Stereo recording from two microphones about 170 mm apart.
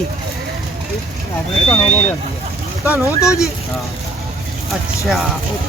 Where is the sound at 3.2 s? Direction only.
20° left (ahead or behind).